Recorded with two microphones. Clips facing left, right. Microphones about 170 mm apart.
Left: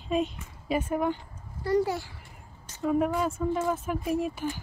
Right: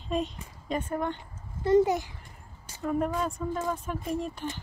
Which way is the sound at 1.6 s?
20° right (ahead or behind).